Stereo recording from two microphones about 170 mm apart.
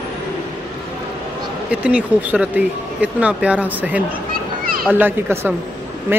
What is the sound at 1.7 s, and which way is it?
Speech, 10° right (ahead or behind).